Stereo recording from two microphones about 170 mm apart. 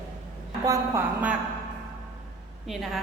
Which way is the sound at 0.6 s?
20° right (ahead or behind).